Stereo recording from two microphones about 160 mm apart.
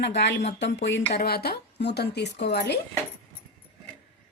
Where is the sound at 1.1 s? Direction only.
80° left.